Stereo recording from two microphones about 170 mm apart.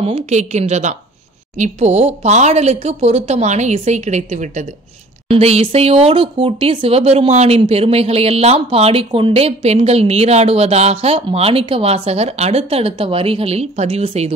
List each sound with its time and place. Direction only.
0.0 s speech: 40° right (ahead or behind)